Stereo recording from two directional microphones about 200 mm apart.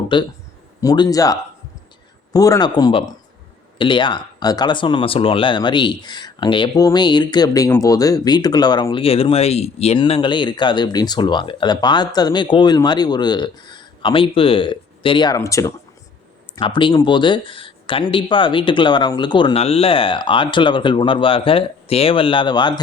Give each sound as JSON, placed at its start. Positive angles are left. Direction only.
{"t": 0.1, "sound": "speech", "side_deg": 25}